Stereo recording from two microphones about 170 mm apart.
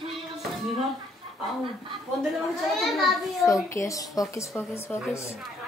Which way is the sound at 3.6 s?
15° left (ahead or behind).